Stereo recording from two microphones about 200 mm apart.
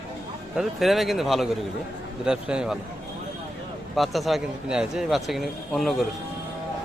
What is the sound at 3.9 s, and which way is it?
A man's voice, centre (ahead or behind).